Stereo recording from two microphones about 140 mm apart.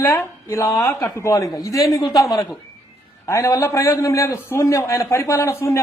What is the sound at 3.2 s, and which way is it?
A man's voice, 20° left (ahead or behind).